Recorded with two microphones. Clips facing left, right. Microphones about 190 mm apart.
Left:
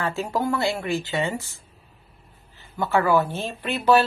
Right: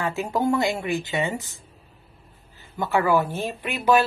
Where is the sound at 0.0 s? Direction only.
15° right (ahead or behind).